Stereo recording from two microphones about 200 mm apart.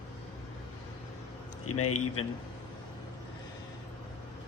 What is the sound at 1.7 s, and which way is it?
Speech, 90° left.